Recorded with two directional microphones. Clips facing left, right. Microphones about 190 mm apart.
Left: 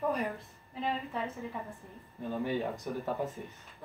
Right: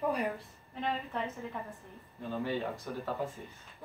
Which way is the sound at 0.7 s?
5° left (ahead or behind).